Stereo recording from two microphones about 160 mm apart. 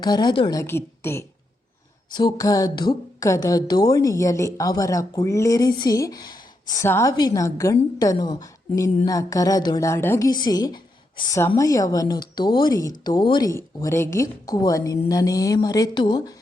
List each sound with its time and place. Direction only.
0.0 s a woman's voice: 25° left (ahead or behind)
0.6 s a woman's voice: 15° left (ahead or behind)